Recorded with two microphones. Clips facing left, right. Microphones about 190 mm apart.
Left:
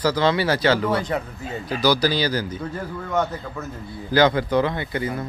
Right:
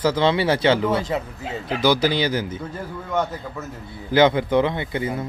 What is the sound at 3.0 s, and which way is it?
Speech, centre (ahead or behind).